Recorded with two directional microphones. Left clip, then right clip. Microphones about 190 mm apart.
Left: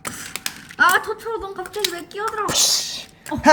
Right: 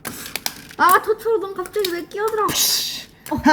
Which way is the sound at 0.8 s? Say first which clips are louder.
Right 3 dB; 35° left (ahead or behind).